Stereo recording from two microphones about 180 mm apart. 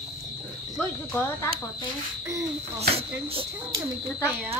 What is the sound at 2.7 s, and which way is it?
Speech, 35° right (ahead or behind).